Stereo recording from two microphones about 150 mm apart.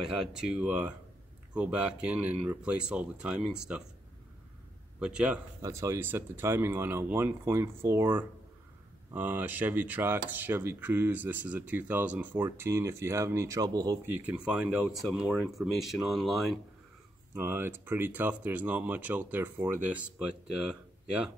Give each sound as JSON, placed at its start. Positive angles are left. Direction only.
{"t": 0.0, "sound": "speech", "side_deg": -5}
{"t": 5.0, "sound": "speech", "side_deg": -5}
{"t": 5.6, "sound": "speech", "side_deg": -20}
{"t": 14.2, "sound": "speech", "side_deg": -10}
{"t": 17.4, "sound": "speech", "side_deg": -15}